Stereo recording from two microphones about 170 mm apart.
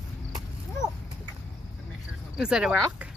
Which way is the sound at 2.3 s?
5° right (ahead or behind).